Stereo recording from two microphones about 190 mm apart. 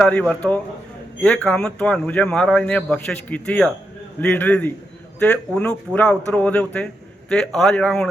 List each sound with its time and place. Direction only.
0.0 s a man's voice: 5° left (ahead or behind)